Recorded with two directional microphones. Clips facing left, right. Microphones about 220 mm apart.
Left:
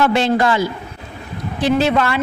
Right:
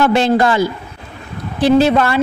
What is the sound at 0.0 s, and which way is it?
Speech, 40° right (ahead or behind).